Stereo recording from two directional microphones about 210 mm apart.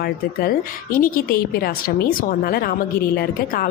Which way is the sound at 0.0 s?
45° left (ahead or behind).